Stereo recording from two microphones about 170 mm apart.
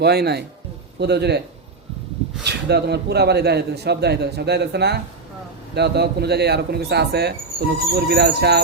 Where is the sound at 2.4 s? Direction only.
75° right (ahead or behind).